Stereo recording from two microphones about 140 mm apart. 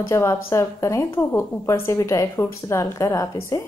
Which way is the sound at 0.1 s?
20° left (ahead or behind).